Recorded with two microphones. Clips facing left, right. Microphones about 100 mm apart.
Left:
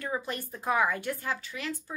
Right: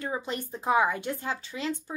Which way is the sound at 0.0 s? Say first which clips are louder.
Right 1 dB; 20° right (ahead or behind).